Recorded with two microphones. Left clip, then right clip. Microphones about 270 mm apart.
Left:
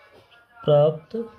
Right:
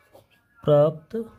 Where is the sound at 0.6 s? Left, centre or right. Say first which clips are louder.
Left 1 dB; right.